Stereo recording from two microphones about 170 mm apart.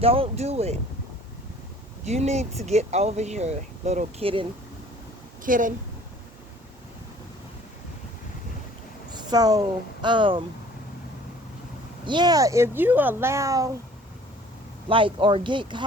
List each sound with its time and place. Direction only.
0.0 s speech: 35° right (ahead or behind)
2.0 s speech: 40° right (ahead or behind)
5.4 s speech: 50° right (ahead or behind)
9.1 s speech: 25° right (ahead or behind)
12.0 s speech: 25° right (ahead or behind)
14.8 s speech: 30° right (ahead or behind)